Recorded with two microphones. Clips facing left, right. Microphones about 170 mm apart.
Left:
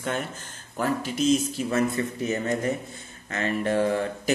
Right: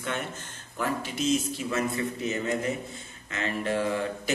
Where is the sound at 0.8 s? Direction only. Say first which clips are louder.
Left 4 dB; 40° left (ahead or behind).